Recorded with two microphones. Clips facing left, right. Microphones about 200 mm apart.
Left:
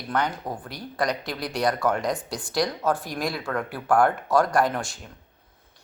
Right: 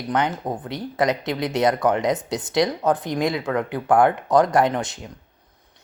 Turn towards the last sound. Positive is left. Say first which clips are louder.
# right 4 dB
turn(degrees=-20)  # may be behind; listen again after turning